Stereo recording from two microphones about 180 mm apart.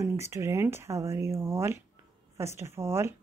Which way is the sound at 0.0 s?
15° right (ahead or behind).